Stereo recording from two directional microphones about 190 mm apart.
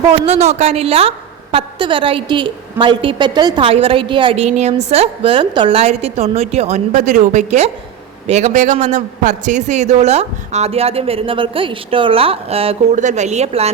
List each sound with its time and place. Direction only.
0.1 s a woman's voice: 35° right (ahead or behind)